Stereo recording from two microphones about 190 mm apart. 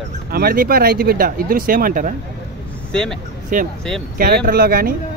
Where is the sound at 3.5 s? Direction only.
45° right (ahead or behind).